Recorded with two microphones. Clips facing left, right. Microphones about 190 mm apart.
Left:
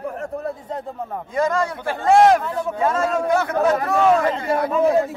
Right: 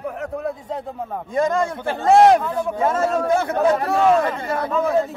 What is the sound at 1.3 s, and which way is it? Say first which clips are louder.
A man's voice: right 1 dB; 25° right (ahead or behind).